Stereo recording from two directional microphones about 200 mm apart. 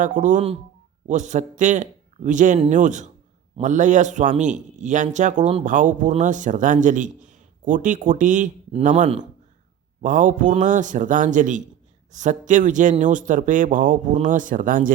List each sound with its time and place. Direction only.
0.0 s a man's voice: 40° right (ahead or behind)